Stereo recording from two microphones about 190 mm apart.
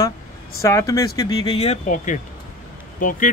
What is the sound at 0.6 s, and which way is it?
Speech, 15° left (ahead or behind).